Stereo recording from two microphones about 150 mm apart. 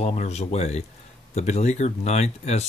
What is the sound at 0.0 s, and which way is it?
Speech, 45° left (ahead or behind).